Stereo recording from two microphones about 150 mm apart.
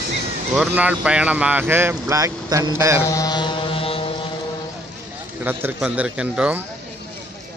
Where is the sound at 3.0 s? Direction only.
20° left (ahead or behind); by 4.3 s 40° left (ahead or behind).